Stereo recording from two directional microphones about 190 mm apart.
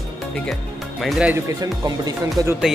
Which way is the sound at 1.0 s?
Centre (ahead or behind).